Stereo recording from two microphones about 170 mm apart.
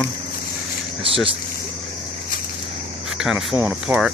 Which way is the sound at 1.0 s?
35° right (ahead or behind).